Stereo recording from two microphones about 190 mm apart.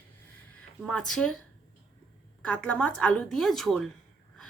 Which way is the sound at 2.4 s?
5° left (ahead or behind).